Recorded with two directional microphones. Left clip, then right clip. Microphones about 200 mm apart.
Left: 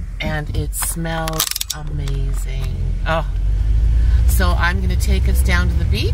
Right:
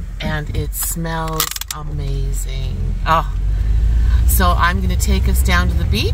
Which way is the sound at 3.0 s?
15° right (ahead or behind).